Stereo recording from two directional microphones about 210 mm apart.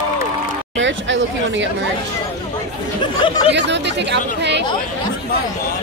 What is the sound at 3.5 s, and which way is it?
Speech, 55° right (ahead or behind).